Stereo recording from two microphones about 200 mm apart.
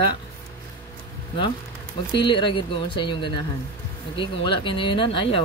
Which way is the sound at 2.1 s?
25° left (ahead or behind).